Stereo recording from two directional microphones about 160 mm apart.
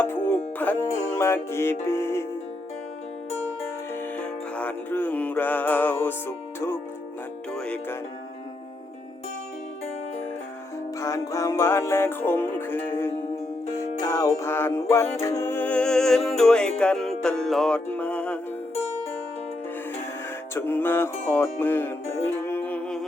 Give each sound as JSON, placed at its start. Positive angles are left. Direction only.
{"t": 0.0, "sound": "music", "side_deg": 15}
{"t": 4.2, "sound": "music", "side_deg": 10}
{"t": 11.0, "sound": "music", "side_deg": 20}
{"t": 20.5, "sound": "music", "side_deg": 15}